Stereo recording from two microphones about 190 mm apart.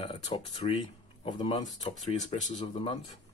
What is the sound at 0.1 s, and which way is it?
Speech, 30° left (ahead or behind).